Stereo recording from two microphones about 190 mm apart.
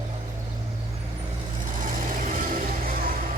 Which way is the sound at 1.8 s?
45° right (ahead or behind).